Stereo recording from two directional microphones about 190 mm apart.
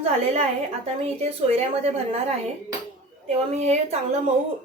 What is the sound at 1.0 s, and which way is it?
Speech, 35° right (ahead or behind).